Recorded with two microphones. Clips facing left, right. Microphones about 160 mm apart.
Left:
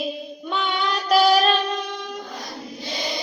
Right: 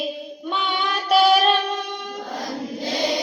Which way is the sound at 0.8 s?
5° right (ahead or behind).